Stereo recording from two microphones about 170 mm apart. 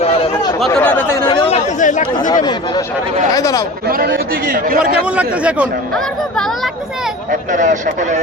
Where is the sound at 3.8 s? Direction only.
60° right (ahead or behind).